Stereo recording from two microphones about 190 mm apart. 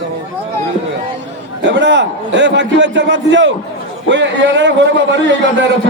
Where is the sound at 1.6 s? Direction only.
65° right (ahead or behind).